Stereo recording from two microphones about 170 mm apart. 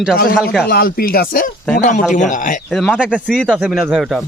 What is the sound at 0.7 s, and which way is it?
Speech, 60° left (ahead or behind).